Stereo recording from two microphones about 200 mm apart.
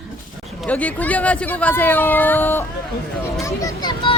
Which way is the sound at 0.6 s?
5° left (ahead or behind).